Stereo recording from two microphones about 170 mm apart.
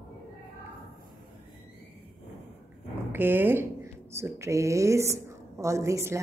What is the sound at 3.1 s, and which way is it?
Speech, 10° right (ahead or behind).